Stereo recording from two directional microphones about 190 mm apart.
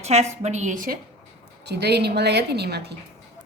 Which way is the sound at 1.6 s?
60° right (ahead or behind).